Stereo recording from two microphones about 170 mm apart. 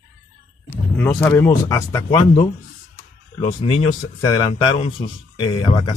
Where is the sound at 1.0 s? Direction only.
10° left (ahead or behind).